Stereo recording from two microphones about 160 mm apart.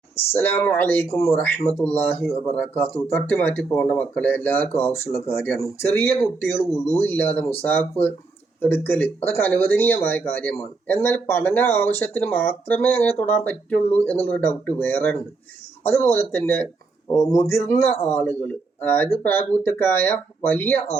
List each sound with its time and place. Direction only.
0.3 s speech: 15° left (ahead or behind)